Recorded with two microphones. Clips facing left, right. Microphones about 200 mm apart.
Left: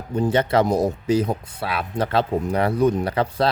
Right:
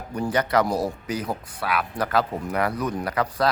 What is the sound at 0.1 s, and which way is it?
Speech, 25° left (ahead or behind).